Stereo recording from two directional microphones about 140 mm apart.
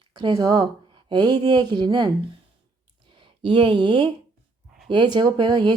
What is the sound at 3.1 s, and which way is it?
A woman's voice, 35° right (ahead or behind).